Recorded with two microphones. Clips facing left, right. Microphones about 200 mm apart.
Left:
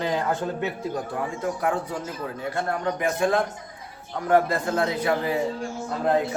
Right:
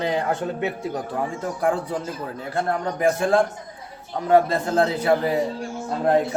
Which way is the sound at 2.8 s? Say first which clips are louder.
Right 2 dB; 35° right (ahead or behind).